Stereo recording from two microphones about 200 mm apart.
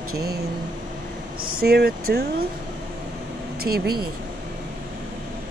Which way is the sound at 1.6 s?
50° right (ahead or behind).